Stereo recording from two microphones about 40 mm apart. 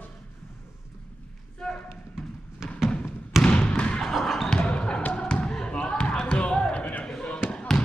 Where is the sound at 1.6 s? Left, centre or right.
Centre.